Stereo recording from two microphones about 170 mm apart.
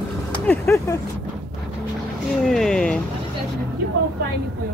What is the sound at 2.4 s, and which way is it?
Speech, centre (ahead or behind).